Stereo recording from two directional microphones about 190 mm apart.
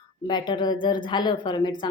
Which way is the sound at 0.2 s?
20° left (ahead or behind).